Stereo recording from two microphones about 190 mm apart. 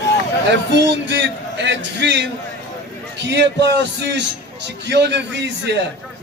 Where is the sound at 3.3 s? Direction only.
65° right (ahead or behind).